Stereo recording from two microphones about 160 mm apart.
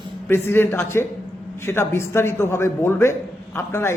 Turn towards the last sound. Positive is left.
turn(degrees=15)  # may be behind; listen again after turning